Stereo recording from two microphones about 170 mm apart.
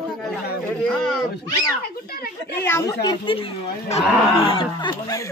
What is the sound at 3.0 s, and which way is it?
A woman's voice, 25° left (ahead or behind).